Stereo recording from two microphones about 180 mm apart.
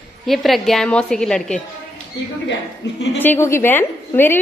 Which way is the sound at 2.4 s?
80° left.